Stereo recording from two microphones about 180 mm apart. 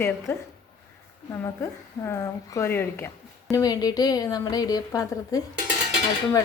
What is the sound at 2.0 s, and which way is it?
A woman's voice, 15° left (ahead or behind).